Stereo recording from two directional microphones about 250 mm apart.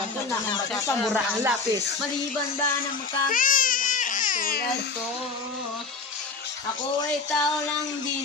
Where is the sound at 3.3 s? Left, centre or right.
Left.